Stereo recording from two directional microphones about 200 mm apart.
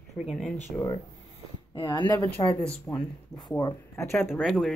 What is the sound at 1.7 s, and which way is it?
Speech, 20° left (ahead or behind).